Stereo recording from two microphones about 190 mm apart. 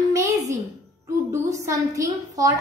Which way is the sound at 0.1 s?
15° right (ahead or behind).